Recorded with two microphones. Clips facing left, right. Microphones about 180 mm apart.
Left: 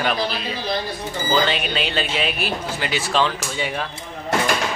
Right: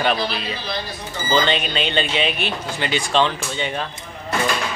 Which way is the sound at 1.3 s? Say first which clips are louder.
Right 1 dB; 5° left (ahead or behind).